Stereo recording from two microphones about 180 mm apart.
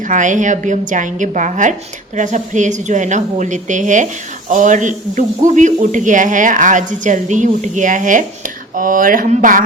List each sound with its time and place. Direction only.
0.0 s a woman's voice: 45° right (ahead or behind)